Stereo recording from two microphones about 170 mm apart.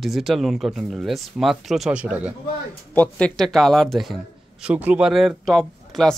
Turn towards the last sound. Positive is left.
turn(degrees=5)  # may be behind; listen again after turning